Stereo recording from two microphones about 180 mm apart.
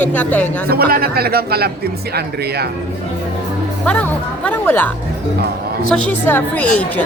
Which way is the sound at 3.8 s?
5° left (ahead or behind).